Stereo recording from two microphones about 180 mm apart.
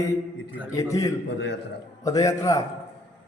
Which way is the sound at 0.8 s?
20° left (ahead or behind).